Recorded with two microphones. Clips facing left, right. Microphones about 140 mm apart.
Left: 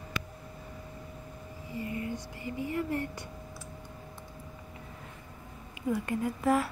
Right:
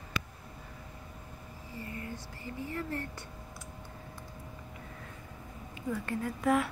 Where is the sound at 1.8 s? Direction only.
15° left (ahead or behind).